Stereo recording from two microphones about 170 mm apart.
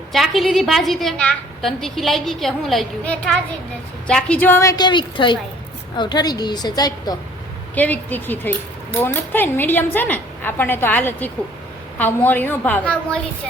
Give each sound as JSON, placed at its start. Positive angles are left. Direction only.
{"t": 0.1, "sound": "a woman's voice", "side_deg": 0}
{"t": 7.8, "sound": "speech", "side_deg": 10}